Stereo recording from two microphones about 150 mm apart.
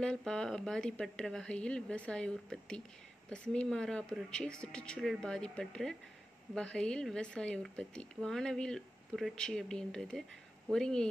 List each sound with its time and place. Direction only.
0.0 s a woman's voice: 5° left (ahead or behind)